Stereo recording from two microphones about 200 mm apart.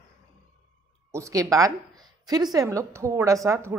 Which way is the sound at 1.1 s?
15° right (ahead or behind).